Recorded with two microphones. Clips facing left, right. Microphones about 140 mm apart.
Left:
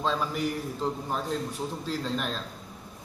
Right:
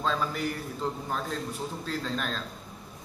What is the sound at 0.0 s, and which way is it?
Speech, 5° left (ahead or behind).